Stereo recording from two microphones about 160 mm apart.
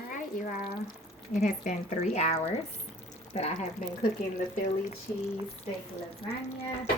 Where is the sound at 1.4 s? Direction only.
50° left (ahead or behind).